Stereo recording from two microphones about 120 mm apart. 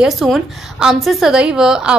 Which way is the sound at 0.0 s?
5° right (ahead or behind).